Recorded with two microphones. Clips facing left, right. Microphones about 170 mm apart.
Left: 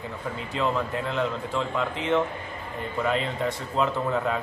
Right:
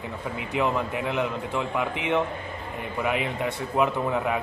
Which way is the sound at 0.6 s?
15° right (ahead or behind).